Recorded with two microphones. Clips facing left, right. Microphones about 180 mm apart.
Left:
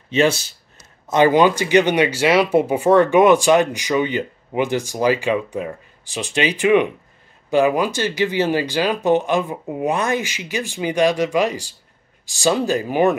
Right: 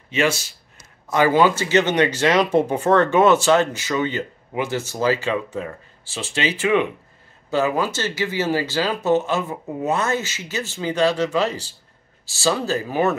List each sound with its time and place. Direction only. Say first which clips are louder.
0.1 s speech: left 4 dB; 35° left (ahead or behind)
1.0 s speech: left 3 dB; 20° left (ahead or behind)